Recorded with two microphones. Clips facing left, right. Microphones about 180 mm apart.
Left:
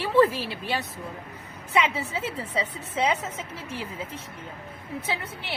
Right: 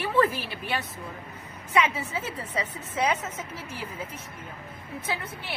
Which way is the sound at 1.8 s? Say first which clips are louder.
Even; 25° left (ahead or behind).